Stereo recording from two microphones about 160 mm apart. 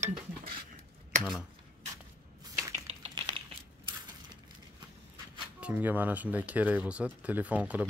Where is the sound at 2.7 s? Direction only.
40° right (ahead or behind).